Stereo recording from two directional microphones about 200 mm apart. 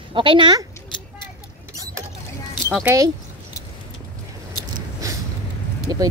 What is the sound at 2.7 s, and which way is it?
Speech, 10° right (ahead or behind).